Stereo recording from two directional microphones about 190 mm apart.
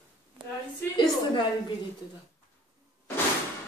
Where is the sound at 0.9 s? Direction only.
25° left (ahead or behind).